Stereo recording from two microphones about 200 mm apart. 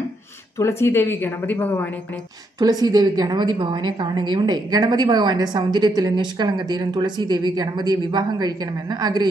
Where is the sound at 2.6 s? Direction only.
20° right (ahead or behind).